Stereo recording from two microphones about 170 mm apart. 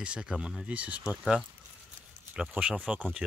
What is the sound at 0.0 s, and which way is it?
Speech, 5° right (ahead or behind).